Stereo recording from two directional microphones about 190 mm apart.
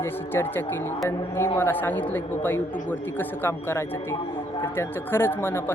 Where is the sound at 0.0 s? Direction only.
15° left (ahead or behind).